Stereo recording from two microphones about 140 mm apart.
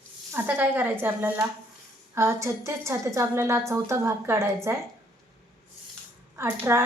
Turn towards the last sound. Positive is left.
turn(degrees=-20)  # may be behind; listen again after turning